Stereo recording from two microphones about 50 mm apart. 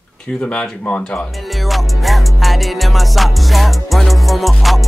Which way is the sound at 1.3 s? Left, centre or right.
Centre.